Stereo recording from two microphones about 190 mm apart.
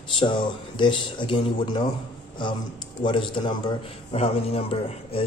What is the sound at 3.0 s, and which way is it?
A man's voice, 25° left (ahead or behind).